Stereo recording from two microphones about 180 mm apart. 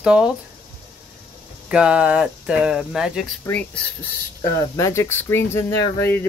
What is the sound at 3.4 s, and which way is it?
Speech, 10° left (ahead or behind).